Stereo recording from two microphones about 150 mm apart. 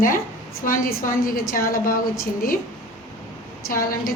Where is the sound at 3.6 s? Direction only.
70° left (ahead or behind).